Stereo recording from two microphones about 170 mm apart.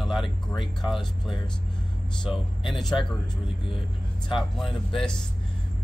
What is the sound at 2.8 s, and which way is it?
Speech, 25° left (ahead or behind).